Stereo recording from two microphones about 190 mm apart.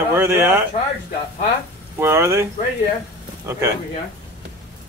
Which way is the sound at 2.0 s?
10° right (ahead or behind).